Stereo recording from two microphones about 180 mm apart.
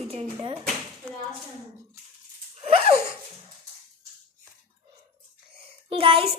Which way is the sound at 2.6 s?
35° right (ahead or behind).